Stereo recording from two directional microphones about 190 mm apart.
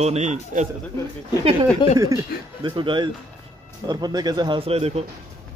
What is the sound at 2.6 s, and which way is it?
Speech, 25° right (ahead or behind).